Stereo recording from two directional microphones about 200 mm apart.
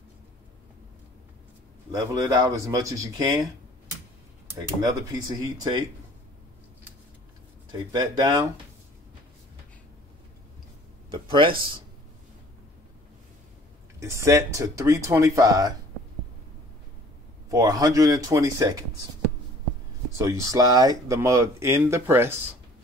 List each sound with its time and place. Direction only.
1.9 s speech: 20° right (ahead or behind)
4.6 s speech: 15° right (ahead or behind)
7.7 s speech: 20° right (ahead or behind)
11.1 s speech: 25° right (ahead or behind)
13.9 s speech: 15° right (ahead or behind)
17.5 s speech: 20° right (ahead or behind)
20.2 s speech: 15° right (ahead or behind)